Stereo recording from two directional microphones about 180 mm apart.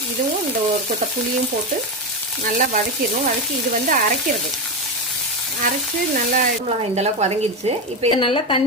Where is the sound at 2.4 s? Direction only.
45° right (ahead or behind).